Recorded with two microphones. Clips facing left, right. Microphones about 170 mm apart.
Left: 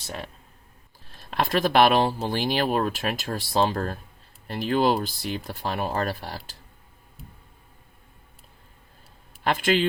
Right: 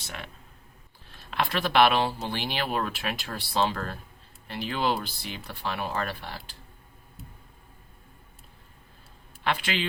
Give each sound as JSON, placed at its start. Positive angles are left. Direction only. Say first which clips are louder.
{"t": 1.1, "sound": "speech", "louder": "left 4 dB", "side_deg": 40}
{"t": 9.4, "sound": "speech", "louder": "left 6 dB", "side_deg": 45}